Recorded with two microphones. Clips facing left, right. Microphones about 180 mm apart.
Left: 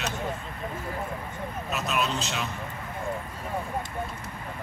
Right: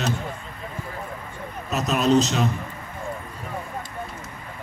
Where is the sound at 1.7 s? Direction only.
40° right (ahead or behind).